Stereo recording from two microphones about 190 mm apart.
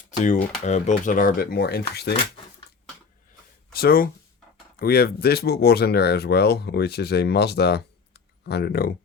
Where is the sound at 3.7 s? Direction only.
50° left (ahead or behind).